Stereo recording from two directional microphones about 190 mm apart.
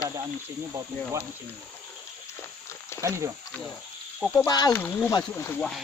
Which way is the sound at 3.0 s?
15° right (ahead or behind).